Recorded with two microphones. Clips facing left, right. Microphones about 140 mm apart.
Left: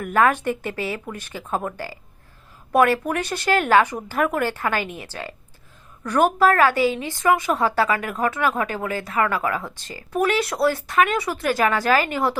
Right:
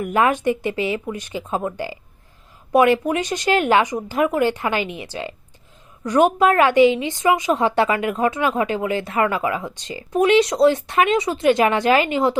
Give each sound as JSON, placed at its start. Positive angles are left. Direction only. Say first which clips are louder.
{"t": 0.0, "sound": "speech", "louder": "right 1 dB", "side_deg": -15}